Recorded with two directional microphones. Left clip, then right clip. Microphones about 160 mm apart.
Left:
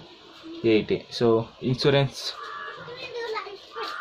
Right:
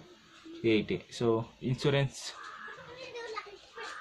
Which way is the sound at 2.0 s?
45° right (ahead or behind).